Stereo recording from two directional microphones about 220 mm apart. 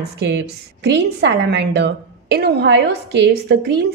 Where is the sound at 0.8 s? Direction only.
50° right (ahead or behind).